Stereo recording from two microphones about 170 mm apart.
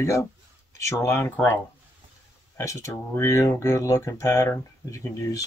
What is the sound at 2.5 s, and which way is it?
Speech, 20° left (ahead or behind).